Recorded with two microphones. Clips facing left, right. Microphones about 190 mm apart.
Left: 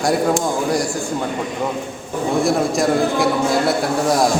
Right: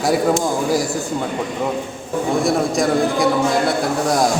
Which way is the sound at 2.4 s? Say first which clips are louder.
Left 1 dB; centre (ahead or behind).